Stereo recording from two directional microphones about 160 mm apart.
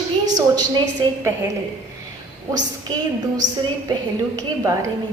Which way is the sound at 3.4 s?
50° right (ahead or behind).